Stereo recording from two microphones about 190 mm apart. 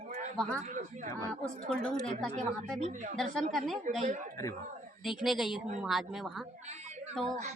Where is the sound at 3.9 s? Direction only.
40° right (ahead or behind).